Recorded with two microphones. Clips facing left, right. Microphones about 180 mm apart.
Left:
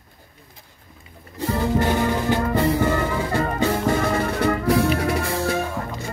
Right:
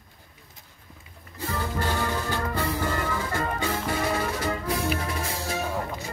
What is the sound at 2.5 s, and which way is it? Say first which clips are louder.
Music: left 9 dB; 55° left (ahead or behind).